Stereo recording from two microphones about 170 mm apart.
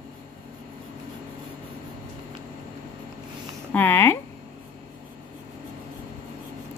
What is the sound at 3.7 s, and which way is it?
Speech, 10° left (ahead or behind).